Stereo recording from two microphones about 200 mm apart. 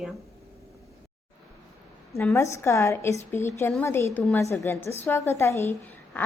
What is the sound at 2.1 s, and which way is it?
A woman's voice, 15° left (ahead or behind).